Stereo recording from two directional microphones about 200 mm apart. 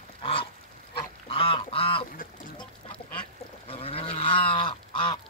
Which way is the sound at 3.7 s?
30° left (ahead or behind).